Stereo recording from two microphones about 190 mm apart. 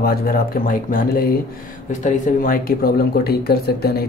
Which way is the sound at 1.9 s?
40° left (ahead or behind).